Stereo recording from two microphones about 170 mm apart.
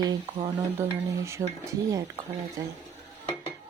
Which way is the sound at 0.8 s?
15° right (ahead or behind).